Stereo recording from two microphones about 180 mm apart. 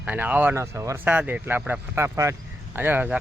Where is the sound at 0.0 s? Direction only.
10° right (ahead or behind).